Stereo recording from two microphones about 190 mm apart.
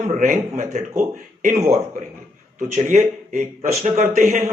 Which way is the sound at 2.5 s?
40° right (ahead or behind).